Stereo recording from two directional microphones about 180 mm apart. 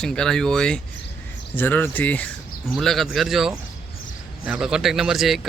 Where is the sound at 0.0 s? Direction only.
5° left (ahead or behind).